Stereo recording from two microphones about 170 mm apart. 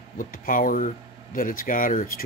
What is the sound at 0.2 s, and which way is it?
Speech, 55° left (ahead or behind).